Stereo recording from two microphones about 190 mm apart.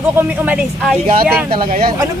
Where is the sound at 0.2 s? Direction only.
5° right (ahead or behind).